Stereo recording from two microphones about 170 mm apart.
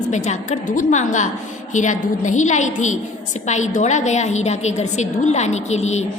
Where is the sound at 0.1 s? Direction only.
45° left (ahead or behind).